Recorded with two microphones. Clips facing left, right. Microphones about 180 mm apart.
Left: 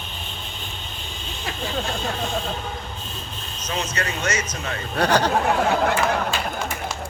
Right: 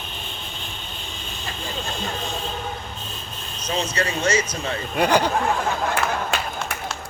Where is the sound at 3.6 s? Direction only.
30° right (ahead or behind).